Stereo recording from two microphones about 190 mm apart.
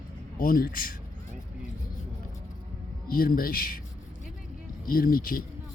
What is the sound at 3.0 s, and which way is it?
Speech, 50° left (ahead or behind).